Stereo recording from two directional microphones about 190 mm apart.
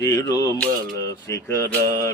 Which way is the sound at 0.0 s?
20° left (ahead or behind).